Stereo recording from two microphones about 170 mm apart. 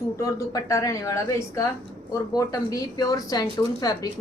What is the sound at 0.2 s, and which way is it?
Speech, 20° left (ahead or behind).